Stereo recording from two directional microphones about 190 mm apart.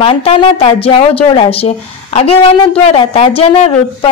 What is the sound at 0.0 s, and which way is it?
A woman's voice, 30° left (ahead or behind).